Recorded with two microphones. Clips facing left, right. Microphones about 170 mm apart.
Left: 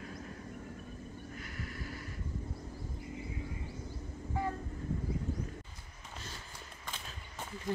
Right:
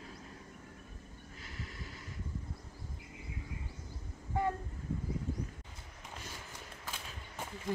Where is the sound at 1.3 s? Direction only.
25° right (ahead or behind).